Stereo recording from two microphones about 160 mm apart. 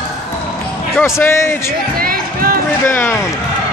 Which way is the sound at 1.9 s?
65° right (ahead or behind).